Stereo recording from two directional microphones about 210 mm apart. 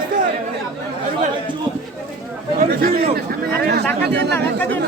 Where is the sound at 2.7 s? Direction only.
45° right (ahead or behind).